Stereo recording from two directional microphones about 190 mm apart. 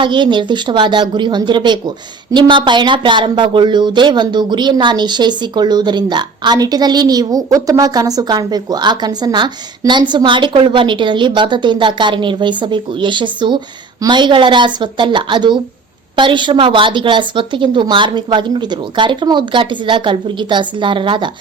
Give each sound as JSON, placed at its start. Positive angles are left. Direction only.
{"t": 0.0, "sound": "speech", "side_deg": -25}